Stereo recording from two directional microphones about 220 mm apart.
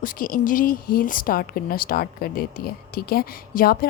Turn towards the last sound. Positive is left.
turn(degrees=40)  # may be behind; listen again after turning